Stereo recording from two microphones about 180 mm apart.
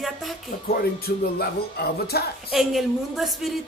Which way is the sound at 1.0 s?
60° left (ahead or behind).